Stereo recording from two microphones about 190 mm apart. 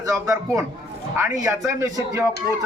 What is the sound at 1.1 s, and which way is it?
A man's voice, 15° right (ahead or behind).